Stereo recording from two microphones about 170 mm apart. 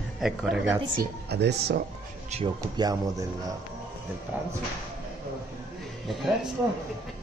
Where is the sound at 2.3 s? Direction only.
40° right (ahead or behind).